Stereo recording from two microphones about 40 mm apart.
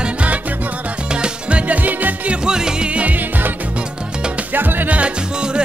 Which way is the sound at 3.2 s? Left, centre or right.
Right.